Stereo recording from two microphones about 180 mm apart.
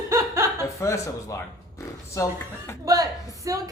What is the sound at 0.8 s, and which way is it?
Speech, 15° left (ahead or behind).